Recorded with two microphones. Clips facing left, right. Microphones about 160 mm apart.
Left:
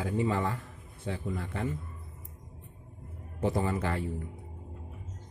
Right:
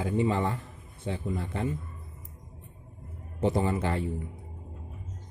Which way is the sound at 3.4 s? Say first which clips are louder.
Right 3 dB; 25° right (ahead or behind).